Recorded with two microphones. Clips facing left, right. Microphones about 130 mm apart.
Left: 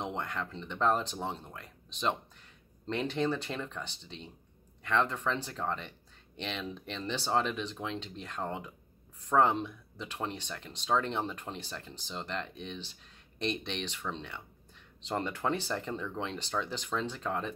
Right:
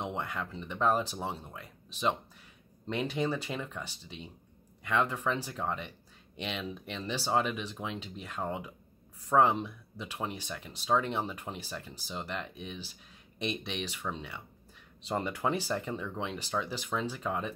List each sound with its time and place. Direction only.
0.0 s speech: 5° right (ahead or behind)